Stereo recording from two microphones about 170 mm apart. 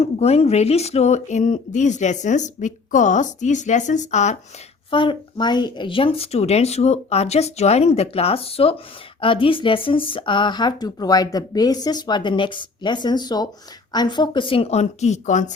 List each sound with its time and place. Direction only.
0.0 s speech: 40° left (ahead or behind)
4.9 s speech: 30° left (ahead or behind); by 15.5 s 45° left (ahead or behind)